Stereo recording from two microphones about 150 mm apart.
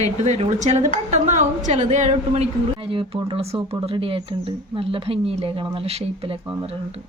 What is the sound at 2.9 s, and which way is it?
Speech, 35° right (ahead or behind).